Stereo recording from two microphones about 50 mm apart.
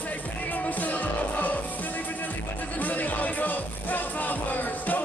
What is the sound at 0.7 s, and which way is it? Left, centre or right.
Music, left.